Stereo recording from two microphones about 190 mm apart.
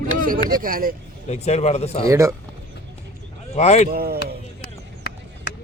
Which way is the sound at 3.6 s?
35° left (ahead or behind).